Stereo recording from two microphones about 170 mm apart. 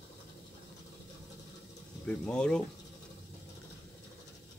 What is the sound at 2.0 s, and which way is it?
Speech, 5° left (ahead or behind).